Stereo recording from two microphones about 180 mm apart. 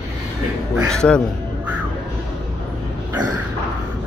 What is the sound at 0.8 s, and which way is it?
Speech, 5° left (ahead or behind).